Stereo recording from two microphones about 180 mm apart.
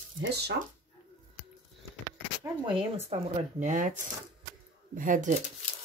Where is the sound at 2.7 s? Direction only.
30° right (ahead or behind).